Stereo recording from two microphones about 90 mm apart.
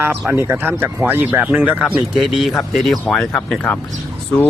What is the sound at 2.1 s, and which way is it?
Speech, centre (ahead or behind).